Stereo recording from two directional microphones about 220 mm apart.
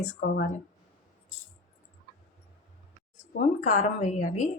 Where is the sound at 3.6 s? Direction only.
35° left (ahead or behind).